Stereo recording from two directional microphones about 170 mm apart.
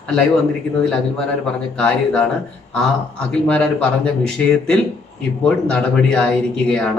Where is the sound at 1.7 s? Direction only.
5° left (ahead or behind).